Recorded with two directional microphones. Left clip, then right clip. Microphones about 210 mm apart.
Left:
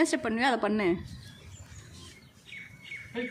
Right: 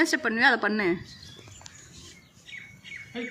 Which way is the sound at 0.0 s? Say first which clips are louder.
Right 5 dB; 5° left (ahead or behind).